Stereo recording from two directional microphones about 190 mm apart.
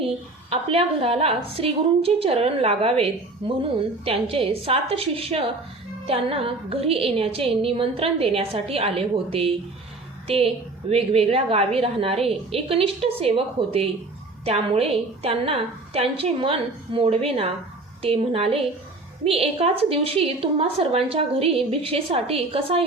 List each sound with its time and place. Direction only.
0.5 s a woman's voice: 30° right (ahead or behind)